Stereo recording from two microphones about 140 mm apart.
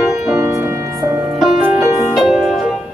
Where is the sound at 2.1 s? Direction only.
Centre (ahead or behind).